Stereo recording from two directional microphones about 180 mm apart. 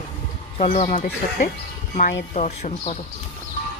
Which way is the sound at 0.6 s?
45° left (ahead or behind).